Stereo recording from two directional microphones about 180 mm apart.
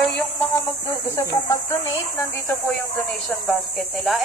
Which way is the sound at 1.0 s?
15° left (ahead or behind).